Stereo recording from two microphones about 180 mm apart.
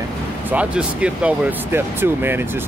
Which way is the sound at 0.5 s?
5° right (ahead or behind).